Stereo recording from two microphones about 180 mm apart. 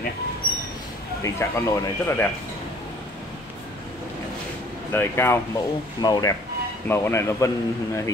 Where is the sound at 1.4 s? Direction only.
15° left (ahead or behind).